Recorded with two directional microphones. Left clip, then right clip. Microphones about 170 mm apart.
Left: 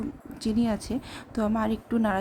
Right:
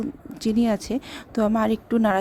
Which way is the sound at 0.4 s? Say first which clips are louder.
Right 5 dB; 40° right (ahead or behind).